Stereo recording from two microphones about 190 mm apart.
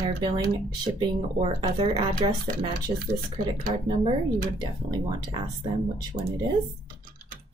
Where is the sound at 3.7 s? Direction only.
25° right (ahead or behind).